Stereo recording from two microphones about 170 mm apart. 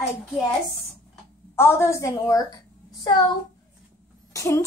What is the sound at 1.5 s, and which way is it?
A woman's voice, 15° left (ahead or behind).